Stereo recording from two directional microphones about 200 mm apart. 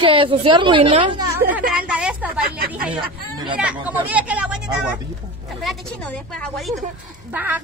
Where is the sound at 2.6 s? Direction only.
50° right (ahead or behind).